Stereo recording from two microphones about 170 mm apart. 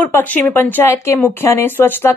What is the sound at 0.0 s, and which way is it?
Speech, 10° left (ahead or behind).